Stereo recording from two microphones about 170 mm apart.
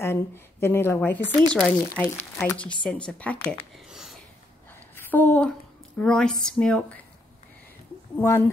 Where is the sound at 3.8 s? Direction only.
Centre (ahead or behind).